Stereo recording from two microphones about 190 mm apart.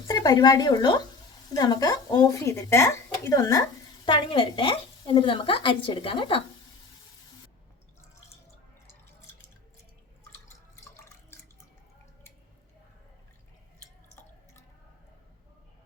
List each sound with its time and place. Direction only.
0.1 s speech: 20° left (ahead or behind)